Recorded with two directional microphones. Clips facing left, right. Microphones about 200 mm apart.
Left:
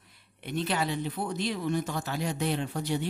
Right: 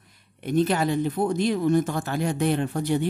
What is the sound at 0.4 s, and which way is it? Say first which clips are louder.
Speech: right 8 dB; 45° right (ahead or behind).